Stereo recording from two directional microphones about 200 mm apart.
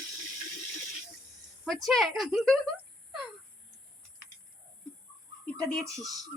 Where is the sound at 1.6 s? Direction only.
Centre (ahead or behind).